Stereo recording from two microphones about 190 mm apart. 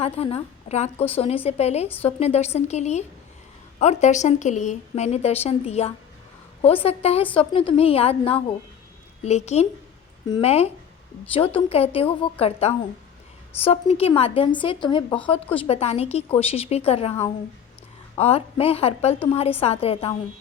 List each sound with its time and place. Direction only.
0.0 s a woman's voice: 30° left (ahead or behind)
18.2 s a woman's voice: 30° left (ahead or behind)